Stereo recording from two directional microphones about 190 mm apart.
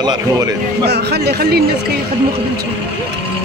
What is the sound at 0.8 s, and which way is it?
Speech, 60° right (ahead or behind).